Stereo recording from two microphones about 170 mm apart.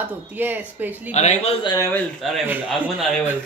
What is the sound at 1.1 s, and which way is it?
Speech, 45° left (ahead or behind).